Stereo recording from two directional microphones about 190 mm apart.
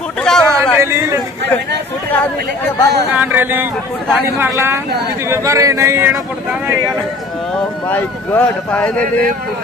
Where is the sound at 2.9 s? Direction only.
10° right (ahead or behind).